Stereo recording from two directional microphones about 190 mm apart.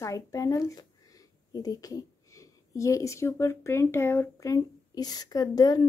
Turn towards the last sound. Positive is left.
turn(degrees=20)  # may be behind; listen again after turning